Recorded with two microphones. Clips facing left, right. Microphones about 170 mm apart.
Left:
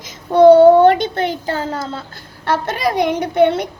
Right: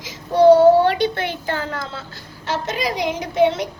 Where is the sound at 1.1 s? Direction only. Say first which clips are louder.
Left 4 dB; 35° left (ahead or behind).